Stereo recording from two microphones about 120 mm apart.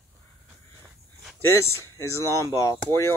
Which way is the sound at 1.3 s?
20° left (ahead or behind).